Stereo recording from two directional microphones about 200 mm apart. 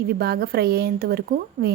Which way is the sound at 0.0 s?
55° right (ahead or behind).